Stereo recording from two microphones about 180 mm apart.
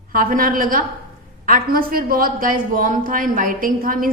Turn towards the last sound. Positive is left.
turn(degrees=-50)  # may be behind; listen again after turning